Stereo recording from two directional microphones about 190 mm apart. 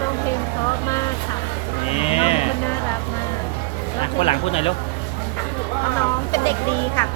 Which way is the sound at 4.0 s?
30° left (ahead or behind).